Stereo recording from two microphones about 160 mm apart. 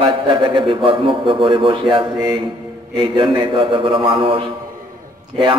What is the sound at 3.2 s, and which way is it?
A man's voice, 35° right (ahead or behind).